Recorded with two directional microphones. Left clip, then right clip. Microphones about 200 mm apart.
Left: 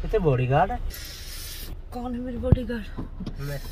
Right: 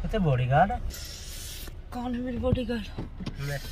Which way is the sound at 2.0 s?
20° right (ahead or behind).